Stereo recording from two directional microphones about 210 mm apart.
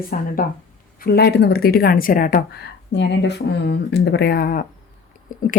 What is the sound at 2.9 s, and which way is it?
A woman's voice, 55° left (ahead or behind).